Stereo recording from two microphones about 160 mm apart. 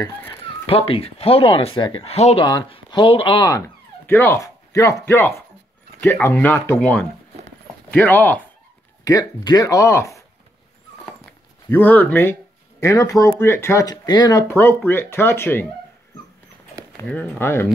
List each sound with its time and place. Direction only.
0.0 s speech: 15° left (ahead or behind)
0.7 s speech: 35° left (ahead or behind)
3.4 s speech: 20° left (ahead or behind)
9.0 s speech: 25° left (ahead or behind)
11.7 s speech: 10° left (ahead or behind)
16.9 s speech: 10° left (ahead or behind)